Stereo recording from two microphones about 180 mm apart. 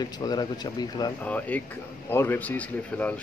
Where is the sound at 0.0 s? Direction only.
20° left (ahead or behind).